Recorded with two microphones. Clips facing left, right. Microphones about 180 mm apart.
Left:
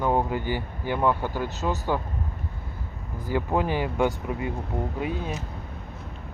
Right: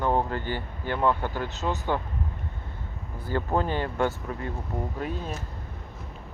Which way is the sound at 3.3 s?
10° left (ahead or behind).